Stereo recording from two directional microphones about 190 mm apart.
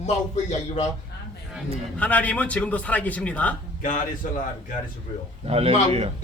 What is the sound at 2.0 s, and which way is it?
A man's voice, 10° left (ahead or behind).